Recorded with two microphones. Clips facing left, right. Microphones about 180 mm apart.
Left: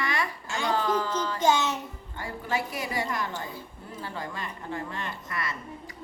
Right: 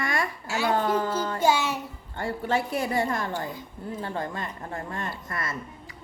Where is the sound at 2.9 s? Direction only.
50° right (ahead or behind).